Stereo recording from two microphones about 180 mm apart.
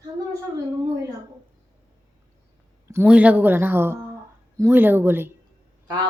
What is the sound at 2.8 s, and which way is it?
A woman's voice, 10° right (ahead or behind).